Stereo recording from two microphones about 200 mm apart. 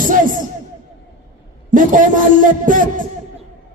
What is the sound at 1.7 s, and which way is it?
A man's voice, 40° right (ahead or behind).